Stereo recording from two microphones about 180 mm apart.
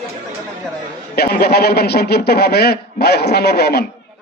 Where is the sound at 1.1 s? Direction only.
60° left (ahead or behind).